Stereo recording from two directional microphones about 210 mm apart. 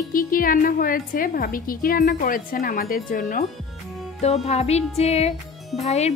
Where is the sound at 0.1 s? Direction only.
40° left (ahead or behind).